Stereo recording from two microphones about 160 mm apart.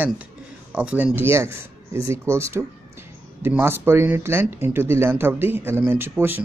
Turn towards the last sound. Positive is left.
turn(degrees=-15)  # may be behind; listen again after turning